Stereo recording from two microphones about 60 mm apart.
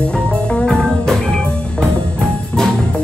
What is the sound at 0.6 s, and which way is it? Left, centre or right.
Music, centre.